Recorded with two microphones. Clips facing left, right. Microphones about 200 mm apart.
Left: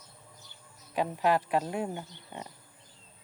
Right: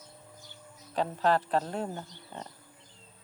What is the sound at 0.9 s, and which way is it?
Speech, 10° left (ahead or behind).